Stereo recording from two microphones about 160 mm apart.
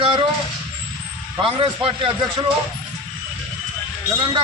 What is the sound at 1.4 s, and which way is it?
A man's voice, 30° right (ahead or behind).